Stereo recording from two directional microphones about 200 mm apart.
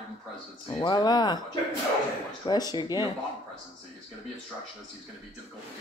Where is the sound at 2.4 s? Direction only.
20° left (ahead or behind).